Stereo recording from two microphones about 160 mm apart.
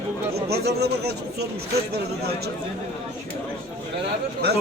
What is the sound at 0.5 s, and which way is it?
Speech, 90° right.